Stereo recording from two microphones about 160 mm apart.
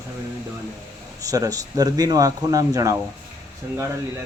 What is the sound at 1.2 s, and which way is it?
Speech, 20° right (ahead or behind).